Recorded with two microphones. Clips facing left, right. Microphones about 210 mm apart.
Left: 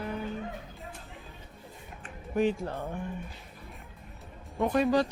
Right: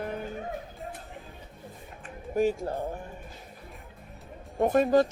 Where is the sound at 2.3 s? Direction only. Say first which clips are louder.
Right 2 dB; 40° right (ahead or behind).